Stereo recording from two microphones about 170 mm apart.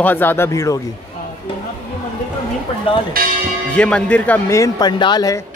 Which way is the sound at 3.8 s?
5° left (ahead or behind).